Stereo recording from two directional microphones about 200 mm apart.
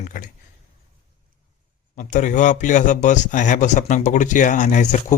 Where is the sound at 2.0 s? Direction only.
40° left (ahead or behind).